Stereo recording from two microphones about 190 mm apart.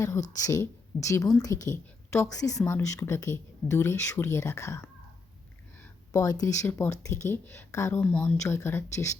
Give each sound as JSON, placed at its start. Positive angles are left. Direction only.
{"t": 0.4, "sound": "speech", "side_deg": 15}
{"t": 6.1, "sound": "speech", "side_deg": 20}